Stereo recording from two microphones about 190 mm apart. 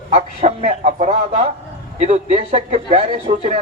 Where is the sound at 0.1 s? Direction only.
35° right (ahead or behind).